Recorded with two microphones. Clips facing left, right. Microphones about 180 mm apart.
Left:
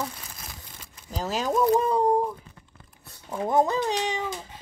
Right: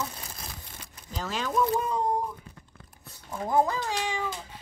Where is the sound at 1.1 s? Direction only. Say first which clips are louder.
Left 3 dB; 40° left (ahead or behind).